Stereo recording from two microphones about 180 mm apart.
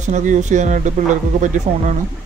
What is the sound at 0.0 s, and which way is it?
Music, 40° right (ahead or behind).